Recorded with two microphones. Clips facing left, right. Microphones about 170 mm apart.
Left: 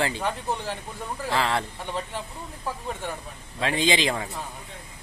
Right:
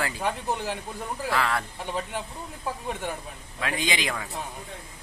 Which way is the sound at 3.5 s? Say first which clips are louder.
Left 5 dB; 30° left (ahead or behind).